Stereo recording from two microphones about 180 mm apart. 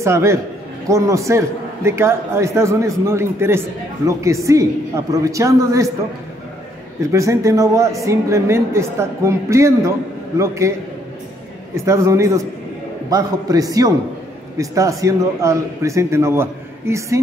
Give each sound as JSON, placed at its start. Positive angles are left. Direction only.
{"t": 0.0, "sound": "a man's voice", "side_deg": -15}
{"t": 7.0, "sound": "a man's voice", "side_deg": -15}
{"t": 11.7, "sound": "a man's voice", "side_deg": -15}